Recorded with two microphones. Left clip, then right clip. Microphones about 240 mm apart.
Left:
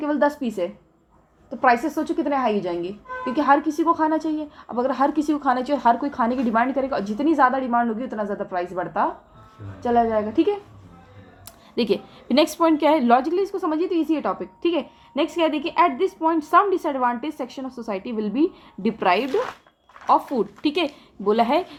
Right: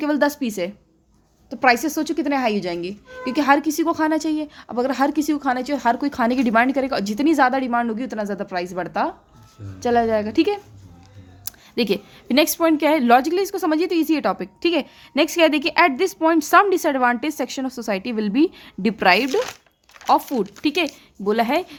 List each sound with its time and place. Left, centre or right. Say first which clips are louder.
0.0 s a woman's voice: right 1 dB; right
7.7 s a woman's voice: even; right
8.0 s a woman's voice: right 1 dB; right
9.9 s a woman's voice: right 1 dB; right
11.4 s a woman's voice: right 1 dB; right